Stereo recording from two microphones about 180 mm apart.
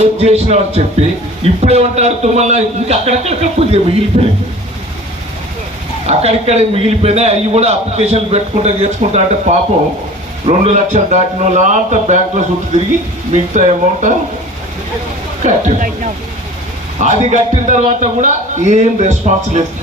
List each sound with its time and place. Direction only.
0.0 s a man's voice: 35° right (ahead or behind)
6.1 s a man's voice: 35° right (ahead or behind)
15.4 s speech: 40° right (ahead or behind)
17.0 s a man's voice: 40° right (ahead or behind)